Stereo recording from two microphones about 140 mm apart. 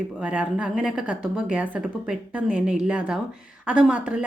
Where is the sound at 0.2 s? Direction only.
10° right (ahead or behind).